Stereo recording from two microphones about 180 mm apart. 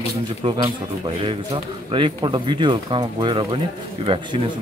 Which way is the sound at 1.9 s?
25° right (ahead or behind).